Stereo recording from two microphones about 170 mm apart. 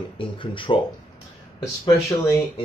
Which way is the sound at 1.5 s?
20° left (ahead or behind).